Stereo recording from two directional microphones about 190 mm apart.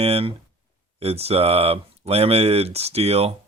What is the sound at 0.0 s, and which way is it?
Speech, 30° right (ahead or behind).